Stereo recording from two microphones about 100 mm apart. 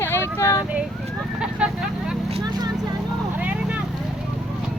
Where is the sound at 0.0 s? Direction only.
25° left (ahead or behind).